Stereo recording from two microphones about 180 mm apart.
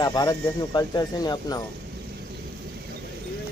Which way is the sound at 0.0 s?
20° left (ahead or behind).